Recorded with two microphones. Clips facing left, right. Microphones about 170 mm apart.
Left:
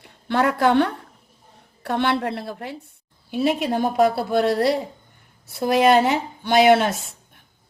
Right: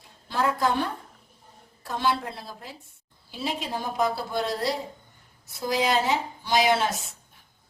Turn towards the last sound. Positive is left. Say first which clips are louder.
# left 7 dB
turn(degrees=60)  # may be behind; listen again after turning